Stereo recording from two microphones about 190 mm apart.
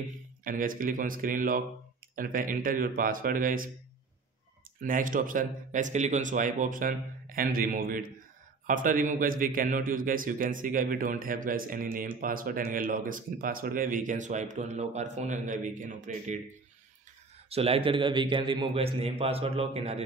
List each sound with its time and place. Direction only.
0.4 s a man's voice: 45° right (ahead or behind)
4.8 s a man's voice: 45° right (ahead or behind)
17.5 s a man's voice: 30° right (ahead or behind)